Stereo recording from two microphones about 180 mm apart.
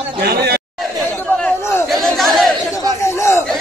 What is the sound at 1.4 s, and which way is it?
Chatter, 15° left (ahead or behind).